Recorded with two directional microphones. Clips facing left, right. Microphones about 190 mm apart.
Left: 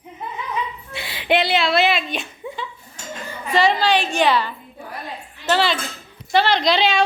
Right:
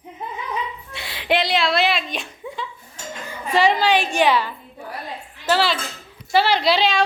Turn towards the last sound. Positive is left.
turn(degrees=0)  # may be behind; listen again after turning